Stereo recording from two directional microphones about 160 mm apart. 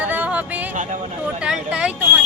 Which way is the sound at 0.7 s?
50° right (ahead or behind).